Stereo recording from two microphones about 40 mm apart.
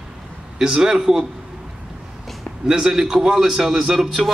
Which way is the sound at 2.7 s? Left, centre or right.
Centre.